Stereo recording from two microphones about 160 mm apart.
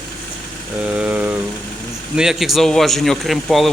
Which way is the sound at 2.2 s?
5° right (ahead or behind).